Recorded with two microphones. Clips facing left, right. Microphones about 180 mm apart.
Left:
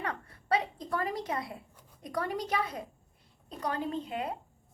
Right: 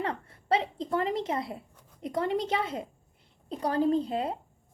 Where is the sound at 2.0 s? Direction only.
25° right (ahead or behind).